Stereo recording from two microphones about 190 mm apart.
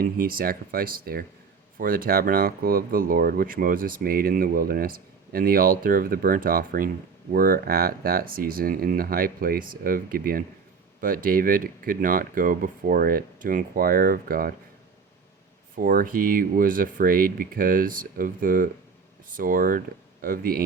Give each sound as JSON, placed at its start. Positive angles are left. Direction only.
{"t": 0.0, "sound": "speech", "side_deg": -50}
{"t": 15.7, "sound": "speech", "side_deg": -45}